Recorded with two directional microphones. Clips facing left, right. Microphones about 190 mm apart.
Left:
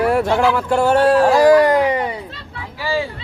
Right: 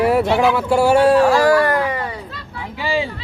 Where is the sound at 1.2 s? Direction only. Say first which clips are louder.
Left 3 dB; 20° left (ahead or behind).